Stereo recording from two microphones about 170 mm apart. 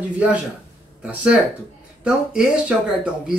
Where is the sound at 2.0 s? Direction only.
5° right (ahead or behind).